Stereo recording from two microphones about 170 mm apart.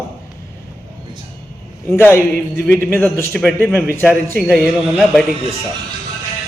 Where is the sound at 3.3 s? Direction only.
5° left (ahead or behind).